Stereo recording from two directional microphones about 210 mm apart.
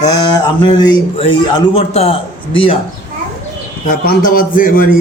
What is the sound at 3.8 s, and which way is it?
A man's voice, 40° left (ahead or behind).